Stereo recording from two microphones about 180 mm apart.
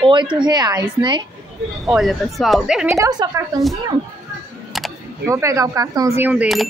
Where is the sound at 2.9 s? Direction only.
20° right (ahead or behind).